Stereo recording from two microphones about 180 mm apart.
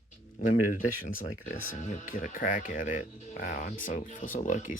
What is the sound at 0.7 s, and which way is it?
Speech, 50° left (ahead or behind).